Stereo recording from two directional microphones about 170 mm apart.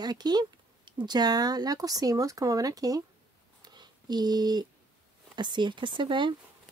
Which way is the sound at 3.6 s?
25° right (ahead or behind).